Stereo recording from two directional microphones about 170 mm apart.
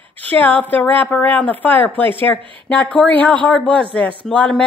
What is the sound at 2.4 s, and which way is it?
Speech, 30° right (ahead or behind).